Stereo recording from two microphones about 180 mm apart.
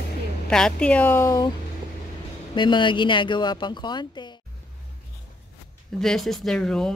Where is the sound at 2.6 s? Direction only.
25° left (ahead or behind).